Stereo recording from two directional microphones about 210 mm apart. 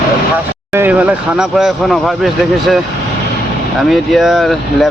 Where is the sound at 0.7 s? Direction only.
10° right (ahead or behind).